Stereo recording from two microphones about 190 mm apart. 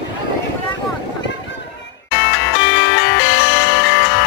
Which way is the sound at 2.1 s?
65° left (ahead or behind).